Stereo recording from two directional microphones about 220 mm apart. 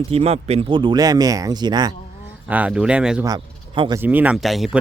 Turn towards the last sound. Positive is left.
turn(degrees=0)  # may be behind; listen again after turning